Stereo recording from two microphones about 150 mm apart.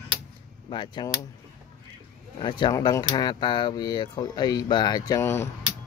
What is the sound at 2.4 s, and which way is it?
Speech, 30° left (ahead or behind).